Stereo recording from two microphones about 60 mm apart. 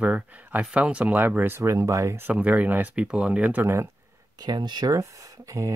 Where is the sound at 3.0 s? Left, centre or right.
Centre.